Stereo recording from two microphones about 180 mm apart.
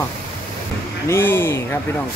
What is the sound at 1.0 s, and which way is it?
Speech, 15° left (ahead or behind).